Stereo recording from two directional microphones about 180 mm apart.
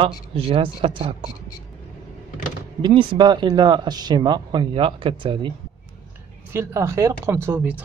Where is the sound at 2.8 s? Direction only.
25° right (ahead or behind).